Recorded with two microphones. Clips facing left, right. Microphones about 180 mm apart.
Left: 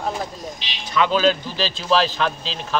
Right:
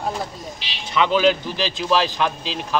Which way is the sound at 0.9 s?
20° right (ahead or behind).